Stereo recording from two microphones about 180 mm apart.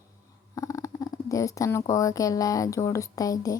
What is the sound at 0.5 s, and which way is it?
Purr, 15° left (ahead or behind).